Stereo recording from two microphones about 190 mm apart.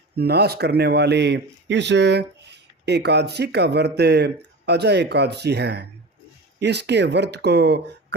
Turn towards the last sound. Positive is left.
turn(degrees=-60)  # may be behind; listen again after turning